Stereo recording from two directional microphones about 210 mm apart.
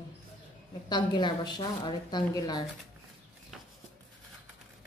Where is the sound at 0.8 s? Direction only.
20° left (ahead or behind).